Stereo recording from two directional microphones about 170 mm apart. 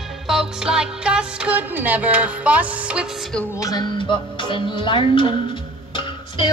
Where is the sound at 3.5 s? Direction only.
20° left (ahead or behind).